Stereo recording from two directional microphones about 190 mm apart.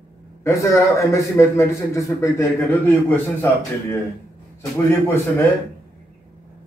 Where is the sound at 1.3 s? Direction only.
15° left (ahead or behind).